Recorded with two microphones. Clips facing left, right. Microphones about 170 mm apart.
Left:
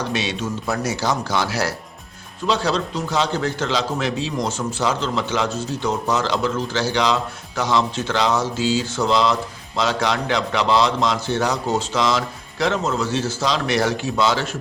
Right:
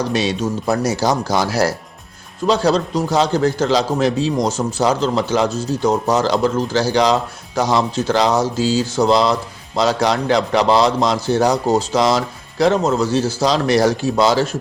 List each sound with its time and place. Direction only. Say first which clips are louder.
0.1 s a man's voice: right 5 dB; 40° right (ahead or behind)